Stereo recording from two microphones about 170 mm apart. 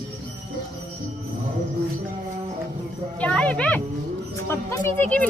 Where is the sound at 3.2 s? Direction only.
5° left (ahead or behind).